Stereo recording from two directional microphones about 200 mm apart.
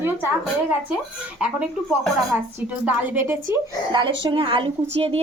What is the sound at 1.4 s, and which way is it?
A woman's voice, 5° right (ahead or behind).